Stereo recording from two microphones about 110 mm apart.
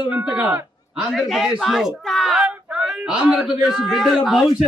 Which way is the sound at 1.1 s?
Centre (ahead or behind).